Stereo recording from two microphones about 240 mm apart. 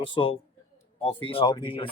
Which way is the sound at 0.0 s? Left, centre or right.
Left.